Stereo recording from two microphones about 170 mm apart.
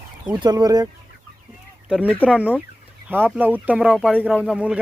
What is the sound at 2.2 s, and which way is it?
Speech, 10° right (ahead or behind).